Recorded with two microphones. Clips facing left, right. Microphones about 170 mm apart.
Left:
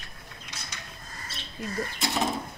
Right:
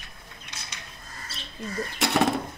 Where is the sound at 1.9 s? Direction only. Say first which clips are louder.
Right 7 dB; 70° right (ahead or behind).